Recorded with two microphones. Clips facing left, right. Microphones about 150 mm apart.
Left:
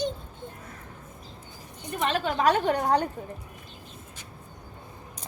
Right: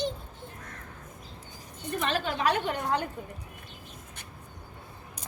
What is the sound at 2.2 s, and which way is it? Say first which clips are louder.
Speech: left 5 dB; 40° left (ahead or behind).